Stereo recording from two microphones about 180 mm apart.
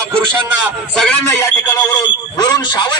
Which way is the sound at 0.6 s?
5° left (ahead or behind).